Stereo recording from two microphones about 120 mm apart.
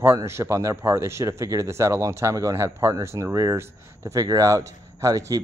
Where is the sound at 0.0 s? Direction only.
20° right (ahead or behind).